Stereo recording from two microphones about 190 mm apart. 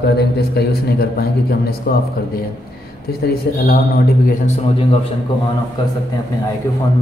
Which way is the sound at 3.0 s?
55° left (ahead or behind).